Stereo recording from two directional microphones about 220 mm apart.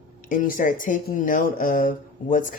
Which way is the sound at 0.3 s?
40° left (ahead or behind).